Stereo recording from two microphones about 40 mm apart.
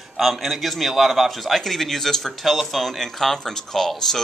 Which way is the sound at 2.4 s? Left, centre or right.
Centre.